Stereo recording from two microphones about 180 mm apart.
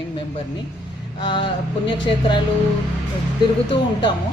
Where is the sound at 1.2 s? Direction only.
25° left (ahead or behind).